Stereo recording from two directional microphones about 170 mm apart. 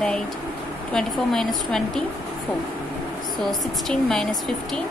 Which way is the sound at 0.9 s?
Centre (ahead or behind).